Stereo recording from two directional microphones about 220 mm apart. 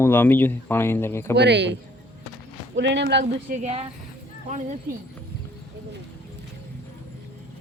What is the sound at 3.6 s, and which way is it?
Speech, 30° right (ahead or behind).